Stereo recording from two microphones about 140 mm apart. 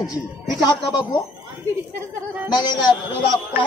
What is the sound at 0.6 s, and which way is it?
Speech, 30° left (ahead or behind).